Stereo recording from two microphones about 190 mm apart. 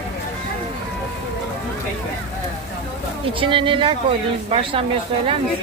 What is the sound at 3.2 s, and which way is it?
A woman's voice, 25° right (ahead or behind).